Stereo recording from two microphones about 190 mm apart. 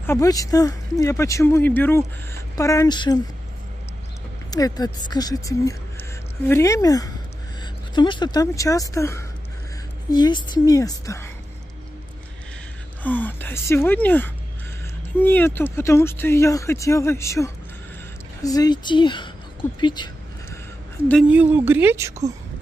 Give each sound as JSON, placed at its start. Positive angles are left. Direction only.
{"t": 0.0, "sound": "speech", "side_deg": 15}
{"t": 4.5, "sound": "speech", "side_deg": 20}
{"t": 13.0, "sound": "speech", "side_deg": 10}
{"t": 21.3, "sound": "speech", "side_deg": -10}